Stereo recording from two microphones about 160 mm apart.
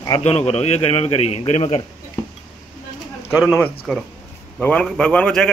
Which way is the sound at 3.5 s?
10° left (ahead or behind).